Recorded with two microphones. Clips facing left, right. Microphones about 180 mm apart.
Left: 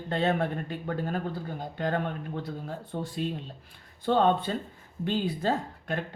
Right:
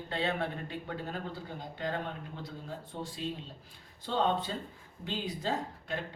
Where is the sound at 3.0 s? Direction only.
55° left (ahead or behind).